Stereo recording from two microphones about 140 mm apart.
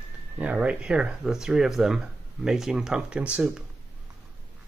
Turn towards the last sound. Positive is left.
turn(degrees=-10)  # may be behind; listen again after turning